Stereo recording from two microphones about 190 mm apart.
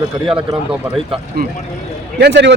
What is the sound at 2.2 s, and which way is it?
Speech, 60° right (ahead or behind).